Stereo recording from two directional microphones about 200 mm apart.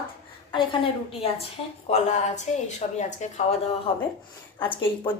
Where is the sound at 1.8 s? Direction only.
35° left (ahead or behind).